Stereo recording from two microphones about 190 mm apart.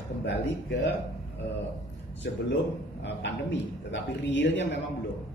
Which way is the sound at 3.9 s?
70° left (ahead or behind).